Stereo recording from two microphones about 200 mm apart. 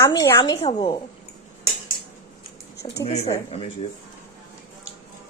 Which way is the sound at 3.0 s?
35° left (ahead or behind).